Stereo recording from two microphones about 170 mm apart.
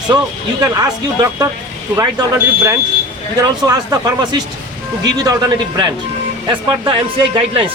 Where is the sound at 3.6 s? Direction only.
25° right (ahead or behind).